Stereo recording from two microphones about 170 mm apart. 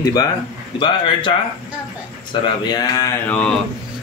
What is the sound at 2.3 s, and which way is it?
Speech, 25° left (ahead or behind).